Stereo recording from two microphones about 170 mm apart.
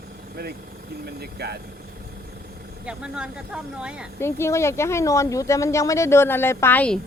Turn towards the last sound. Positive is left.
turn(degrees=10)  # may be behind; listen again after turning